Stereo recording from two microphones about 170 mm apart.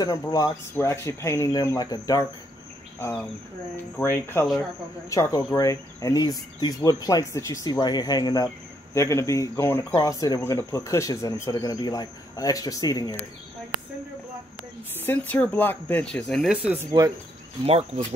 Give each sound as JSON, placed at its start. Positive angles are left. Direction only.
{"t": 0.0, "sound": "speech", "side_deg": 20}
{"t": 3.0, "sound": "speech", "side_deg": 10}
{"t": 15.0, "sound": "speech", "side_deg": 10}
{"t": 17.6, "sound": "speech", "side_deg": -35}